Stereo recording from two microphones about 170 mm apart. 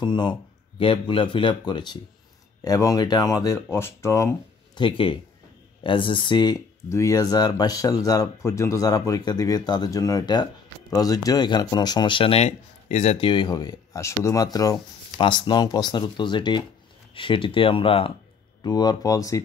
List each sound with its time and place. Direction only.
0.0 s speech: 25° left (ahead or behind)
4.8 s speech: 30° left (ahead or behind)